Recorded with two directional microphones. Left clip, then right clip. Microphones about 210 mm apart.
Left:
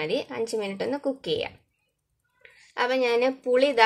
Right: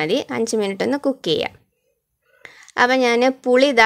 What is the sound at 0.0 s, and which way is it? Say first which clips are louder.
A woman's voice: right 7 dB; 45° right (ahead or behind).